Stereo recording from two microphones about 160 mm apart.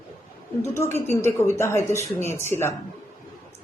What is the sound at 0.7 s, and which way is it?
A woman's voice, 15° left (ahead or behind).